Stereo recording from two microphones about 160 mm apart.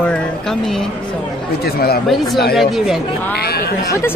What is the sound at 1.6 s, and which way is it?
Speech, 75° left (ahead or behind).